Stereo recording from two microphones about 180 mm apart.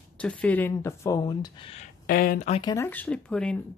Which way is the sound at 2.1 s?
55° left (ahead or behind).